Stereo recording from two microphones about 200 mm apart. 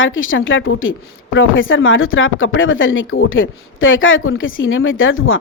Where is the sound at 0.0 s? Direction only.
75° left (ahead or behind).